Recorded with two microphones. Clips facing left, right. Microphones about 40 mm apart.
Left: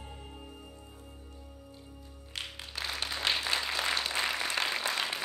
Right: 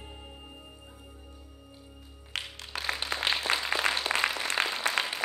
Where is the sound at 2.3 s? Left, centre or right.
Right.